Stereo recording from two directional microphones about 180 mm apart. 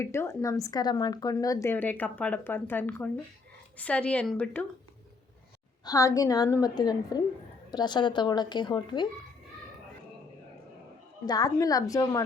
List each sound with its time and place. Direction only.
0.0 s a woman's voice: 15° left (ahead or behind)
5.8 s a woman's voice: 20° left (ahead or behind)
11.3 s a woman's voice: 20° left (ahead or behind)